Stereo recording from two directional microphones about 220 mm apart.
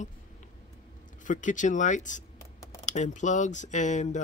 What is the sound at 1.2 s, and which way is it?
Speech, 35° left (ahead or behind).